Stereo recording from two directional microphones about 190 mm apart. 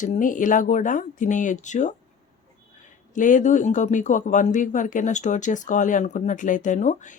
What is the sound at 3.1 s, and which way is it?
Speech, 40° left (ahead or behind).